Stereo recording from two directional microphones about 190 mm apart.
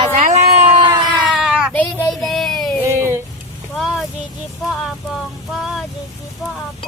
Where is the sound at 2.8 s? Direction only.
15° right (ahead or behind).